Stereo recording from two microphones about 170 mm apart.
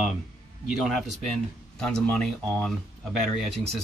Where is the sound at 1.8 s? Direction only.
5° left (ahead or behind).